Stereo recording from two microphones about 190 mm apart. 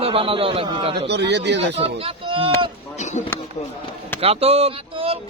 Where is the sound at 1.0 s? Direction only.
60° right (ahead or behind).